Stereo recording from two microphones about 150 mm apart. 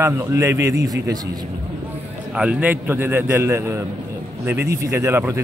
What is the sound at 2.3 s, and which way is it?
A man's voice, 10° right (ahead or behind).